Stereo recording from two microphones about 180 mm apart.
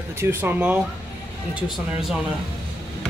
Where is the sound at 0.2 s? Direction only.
10° right (ahead or behind).